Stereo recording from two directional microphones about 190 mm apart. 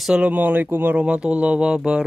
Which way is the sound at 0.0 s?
5° right (ahead or behind).